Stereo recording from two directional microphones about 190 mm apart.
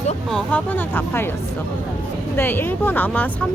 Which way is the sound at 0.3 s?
5° left (ahead or behind).